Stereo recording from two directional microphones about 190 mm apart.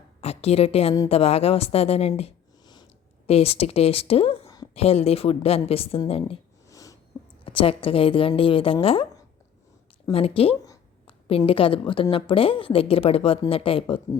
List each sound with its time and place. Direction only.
0.2 s a woman's voice: 35° left (ahead or behind)
4.4 s a sound: 20° left (ahead or behind)
4.7 s speech: 30° left (ahead or behind)
6.7 s a sound: 15° left (ahead or behind)
7.4 s a woman's voice: 30° left (ahead or behind)
10.1 s a woman's voice: 30° left (ahead or behind)